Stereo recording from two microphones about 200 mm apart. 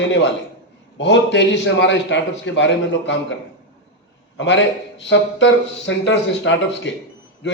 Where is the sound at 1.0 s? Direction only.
65° left (ahead or behind).